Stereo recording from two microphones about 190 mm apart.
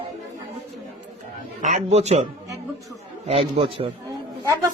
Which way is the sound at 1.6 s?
35° right (ahead or behind).